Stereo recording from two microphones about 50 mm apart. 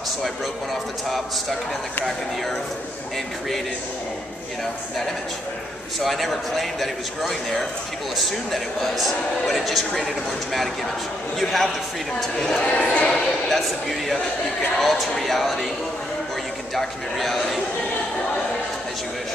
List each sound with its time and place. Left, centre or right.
5.9 s speech: centre
12.6 s speech: left
13.1 s speech: centre
16.7 s speech: centre